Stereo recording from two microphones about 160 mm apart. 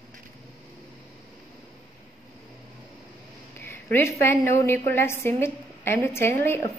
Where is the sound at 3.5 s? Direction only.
15° left (ahead or behind).